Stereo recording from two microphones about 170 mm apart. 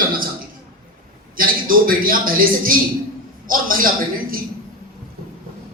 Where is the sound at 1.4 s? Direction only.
55° right (ahead or behind).